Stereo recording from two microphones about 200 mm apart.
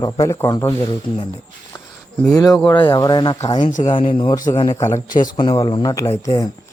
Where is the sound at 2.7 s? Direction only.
25° left (ahead or behind).